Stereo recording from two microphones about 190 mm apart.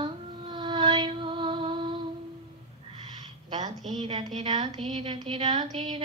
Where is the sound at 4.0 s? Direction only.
30° right (ahead or behind).